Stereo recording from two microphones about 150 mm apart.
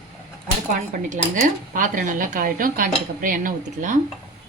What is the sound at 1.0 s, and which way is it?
Speech, 55° right (ahead or behind).